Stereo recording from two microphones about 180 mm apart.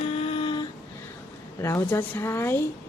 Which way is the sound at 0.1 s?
35° left (ahead or behind).